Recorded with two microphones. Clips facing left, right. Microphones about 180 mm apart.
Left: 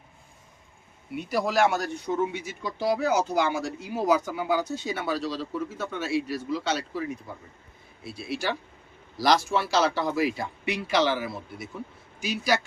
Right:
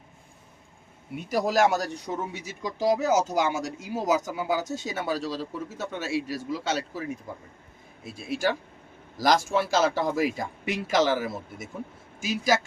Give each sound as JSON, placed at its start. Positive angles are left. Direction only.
{"t": 1.1, "sound": "a man's voice", "side_deg": -45}
{"t": 8.0, "sound": "a man's voice", "side_deg": -45}